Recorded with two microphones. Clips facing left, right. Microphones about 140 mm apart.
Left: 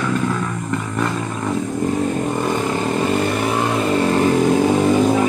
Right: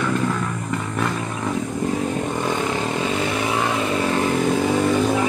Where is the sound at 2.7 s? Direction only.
Centre (ahead or behind).